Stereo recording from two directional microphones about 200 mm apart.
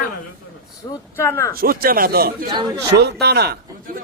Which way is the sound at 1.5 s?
50° right (ahead or behind).